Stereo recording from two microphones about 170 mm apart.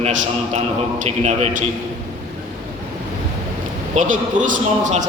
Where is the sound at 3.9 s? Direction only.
50° right (ahead or behind).